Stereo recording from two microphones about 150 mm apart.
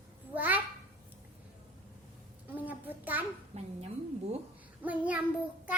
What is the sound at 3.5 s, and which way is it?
Speech, 45° right (ahead or behind).